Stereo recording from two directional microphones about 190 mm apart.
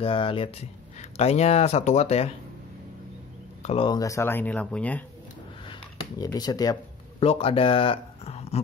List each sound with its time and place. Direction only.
0.0 s speech: 30° left (ahead or behind)
3.6 s speech: 30° left (ahead or behind); by 5.0 s 10° left (ahead or behind)
5.7 s a sound: 20° left (ahead or behind)
7.2 s speech: 30° left (ahead or behind)